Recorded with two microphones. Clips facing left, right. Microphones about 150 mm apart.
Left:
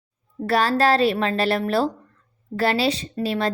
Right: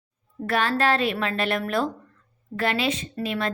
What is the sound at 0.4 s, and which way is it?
A woman's voice, 35° left (ahead or behind).